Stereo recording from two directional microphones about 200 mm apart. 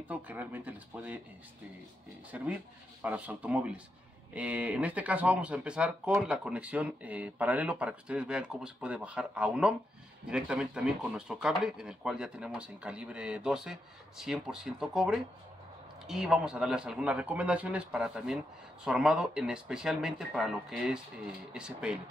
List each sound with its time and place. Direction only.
0.1 s speech: 10° right (ahead or behind)
2.3 s speech: 10° right (ahead or behind)